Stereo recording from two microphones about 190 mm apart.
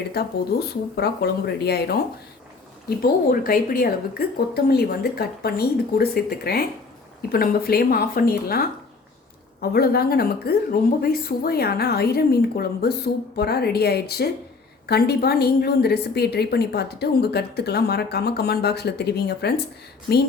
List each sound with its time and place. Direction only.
0.9 s a woman's voice: 60° left (ahead or behind)
3.0 s a woman's voice: 50° left (ahead or behind)